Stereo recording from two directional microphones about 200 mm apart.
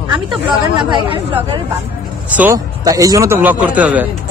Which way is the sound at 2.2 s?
10° right (ahead or behind).